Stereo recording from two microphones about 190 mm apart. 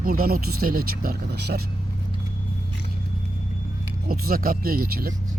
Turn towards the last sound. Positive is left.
turn(degrees=-50)  # may be behind; listen again after turning